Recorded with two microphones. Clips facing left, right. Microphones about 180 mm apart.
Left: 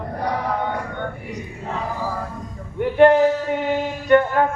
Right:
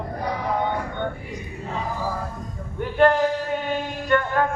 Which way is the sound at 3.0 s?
20° left (ahead or behind).